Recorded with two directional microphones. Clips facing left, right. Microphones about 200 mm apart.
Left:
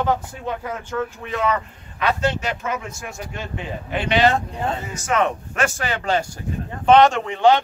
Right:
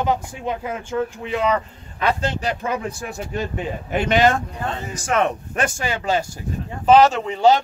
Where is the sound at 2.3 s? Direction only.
35° right (ahead or behind).